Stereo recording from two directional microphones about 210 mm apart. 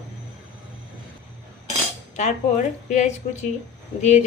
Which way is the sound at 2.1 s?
35° left (ahead or behind).